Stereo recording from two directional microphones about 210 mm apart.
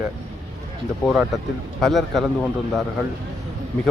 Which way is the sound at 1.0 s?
5° right (ahead or behind).